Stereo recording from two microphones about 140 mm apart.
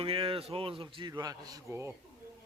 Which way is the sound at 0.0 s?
40° right (ahead or behind).